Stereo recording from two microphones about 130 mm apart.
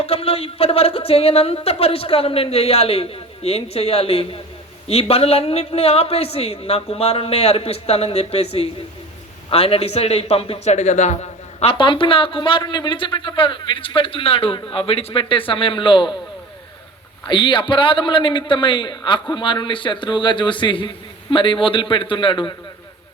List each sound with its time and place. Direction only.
0.0 s a woman's voice: 50° left (ahead or behind)
10.6 s a woman's voice: 60° left (ahead or behind); by 16.1 s 40° left (ahead or behind)
17.2 s a man's voice: 40° left (ahead or behind)